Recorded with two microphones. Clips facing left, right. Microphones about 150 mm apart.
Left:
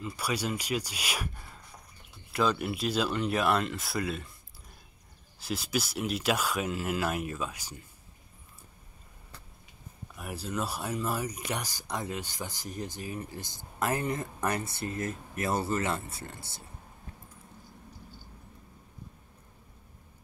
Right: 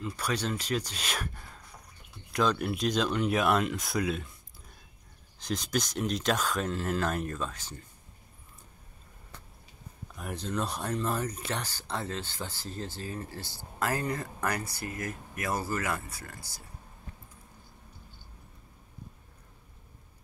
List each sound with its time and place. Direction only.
0.0 s speech: 10° left (ahead or behind)
5.4 s speech: 5° left (ahead or behind)
10.1 s speech: 5° left (ahead or behind); by 16.6 s 25° left (ahead or behind)